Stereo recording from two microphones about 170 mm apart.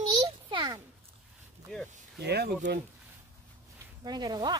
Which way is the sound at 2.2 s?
70° right (ahead or behind).